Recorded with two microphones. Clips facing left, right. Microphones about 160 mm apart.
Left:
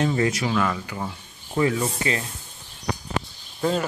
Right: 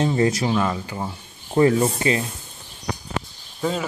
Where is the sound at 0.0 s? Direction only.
30° right (ahead or behind).